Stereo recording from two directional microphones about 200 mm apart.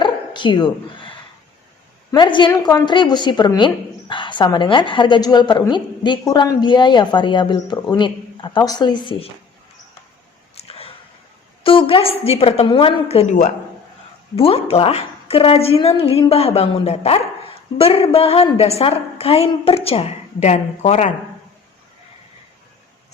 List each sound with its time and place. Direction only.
0.0 s dog: 25° left (ahead or behind)
2.1 s a woman's voice: 25° left (ahead or behind)
10.5 s a sound: 30° left (ahead or behind)
11.6 s a woman's voice: 25° left (ahead or behind)